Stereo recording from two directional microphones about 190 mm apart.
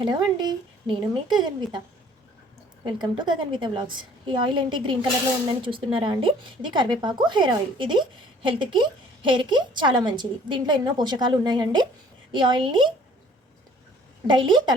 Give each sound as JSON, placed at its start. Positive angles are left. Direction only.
{"t": 0.0, "sound": "speech", "side_deg": -20}
{"t": 2.8, "sound": "speech", "side_deg": -25}
{"t": 14.3, "sound": "speech", "side_deg": -25}